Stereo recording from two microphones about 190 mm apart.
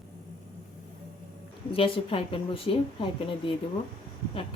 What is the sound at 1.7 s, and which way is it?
Speech, 30° left (ahead or behind).